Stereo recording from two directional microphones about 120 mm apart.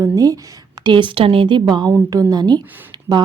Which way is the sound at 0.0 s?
30° right (ahead or behind).